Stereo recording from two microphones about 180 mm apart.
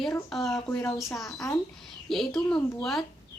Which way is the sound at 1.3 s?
20° left (ahead or behind).